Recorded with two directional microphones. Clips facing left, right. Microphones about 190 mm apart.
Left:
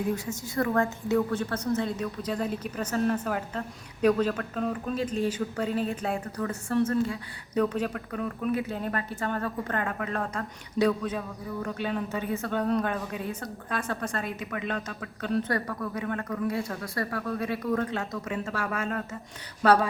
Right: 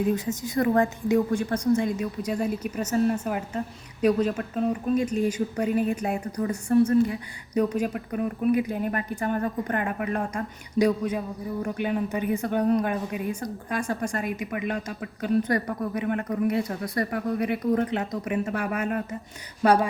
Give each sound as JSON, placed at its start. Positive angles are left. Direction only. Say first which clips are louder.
{"t": 0.1, "sound": "a woman's voice", "louder": "right 5 dB", "side_deg": -20}